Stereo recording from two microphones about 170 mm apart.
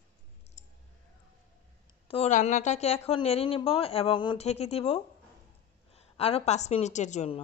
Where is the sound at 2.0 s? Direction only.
35° left (ahead or behind).